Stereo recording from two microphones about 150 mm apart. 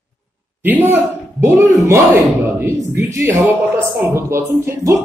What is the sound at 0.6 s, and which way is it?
A man's voice, 10° right (ahead or behind).